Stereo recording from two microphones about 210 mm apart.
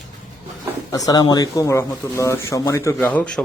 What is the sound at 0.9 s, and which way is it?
Speech, 15° left (ahead or behind).